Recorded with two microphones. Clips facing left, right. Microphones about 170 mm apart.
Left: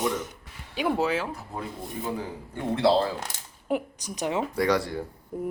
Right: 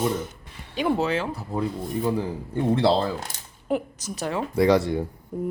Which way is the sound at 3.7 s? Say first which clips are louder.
Right 2 dB; 15° left (ahead or behind).